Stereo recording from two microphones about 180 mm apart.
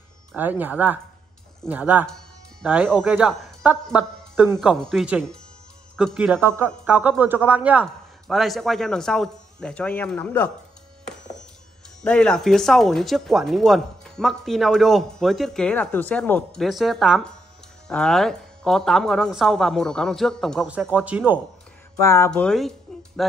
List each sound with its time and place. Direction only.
0.4 s speech: 10° right (ahead or behind); by 10.5 s 5° left (ahead or behind)
12.0 s speech: 5° left (ahead or behind)
21.9 s speech: 15° left (ahead or behind)
22.3 s speech: 5° left (ahead or behind)